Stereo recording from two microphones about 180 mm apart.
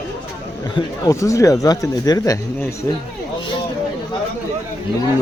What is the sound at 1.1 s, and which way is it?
Speech, 15° left (ahead or behind).